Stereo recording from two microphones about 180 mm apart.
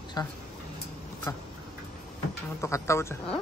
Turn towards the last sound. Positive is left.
turn(degrees=15)  # may be behind; listen again after turning